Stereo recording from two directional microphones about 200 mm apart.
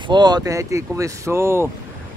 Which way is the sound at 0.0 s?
20° right (ahead or behind).